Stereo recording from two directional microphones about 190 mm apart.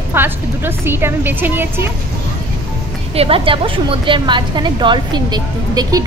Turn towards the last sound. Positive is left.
turn(degrees=-20)  # may be behind; listen again after turning